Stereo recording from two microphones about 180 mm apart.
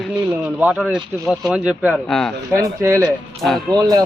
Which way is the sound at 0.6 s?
5° right (ahead or behind).